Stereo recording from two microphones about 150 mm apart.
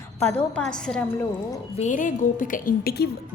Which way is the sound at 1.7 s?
55° left (ahead or behind).